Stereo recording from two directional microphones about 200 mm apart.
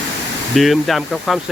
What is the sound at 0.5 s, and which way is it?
Speech, centre (ahead or behind).